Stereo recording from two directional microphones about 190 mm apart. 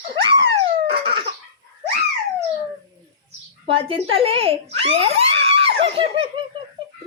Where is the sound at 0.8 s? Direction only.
25° right (ahead or behind).